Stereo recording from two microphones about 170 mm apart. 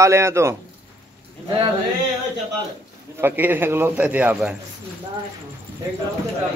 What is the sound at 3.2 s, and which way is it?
A man's voice, 10° right (ahead or behind).